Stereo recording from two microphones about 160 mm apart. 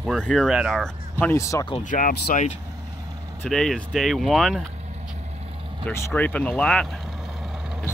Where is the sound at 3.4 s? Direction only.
5° left (ahead or behind).